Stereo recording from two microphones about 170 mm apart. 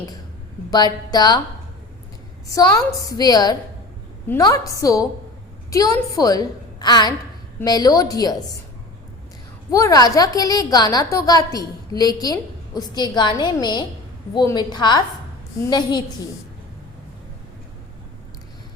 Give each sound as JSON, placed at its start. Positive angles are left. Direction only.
{"t": 0.7, "sound": "a woman's voice", "side_deg": 25}
{"t": 2.5, "sound": "a woman's voice", "side_deg": 20}
{"t": 9.7, "sound": "a woman's voice", "side_deg": 20}